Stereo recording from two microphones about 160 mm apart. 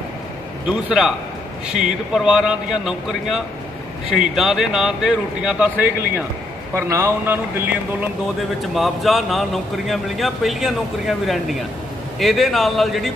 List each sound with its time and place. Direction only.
0.7 s a man's voice: 5° right (ahead or behind)
8.7 s a man's voice: centre (ahead or behind)